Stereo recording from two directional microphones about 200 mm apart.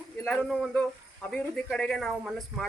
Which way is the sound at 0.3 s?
5° left (ahead or behind).